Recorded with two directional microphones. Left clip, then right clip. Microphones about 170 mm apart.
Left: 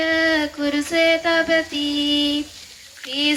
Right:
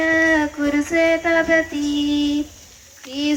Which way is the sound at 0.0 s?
20° left (ahead or behind).